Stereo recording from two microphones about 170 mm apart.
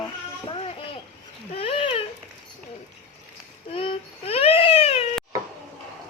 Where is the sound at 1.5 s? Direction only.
35° left (ahead or behind).